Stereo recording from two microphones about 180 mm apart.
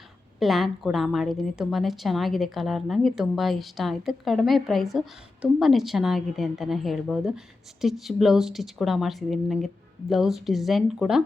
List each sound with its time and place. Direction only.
0.3 s a woman's voice: centre (ahead or behind)